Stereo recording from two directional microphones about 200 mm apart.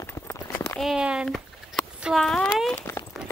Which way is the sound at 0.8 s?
Centre (ahead or behind).